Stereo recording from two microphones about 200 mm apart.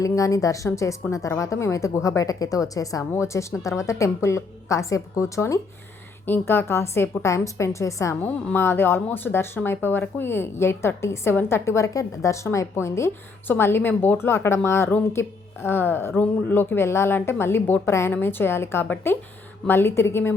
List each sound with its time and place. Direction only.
0.0 s a woman's voice: 15° left (ahead or behind)